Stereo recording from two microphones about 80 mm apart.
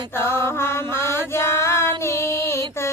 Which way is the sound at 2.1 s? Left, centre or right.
Left.